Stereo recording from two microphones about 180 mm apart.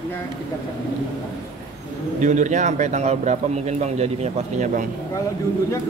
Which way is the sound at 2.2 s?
40° right (ahead or behind).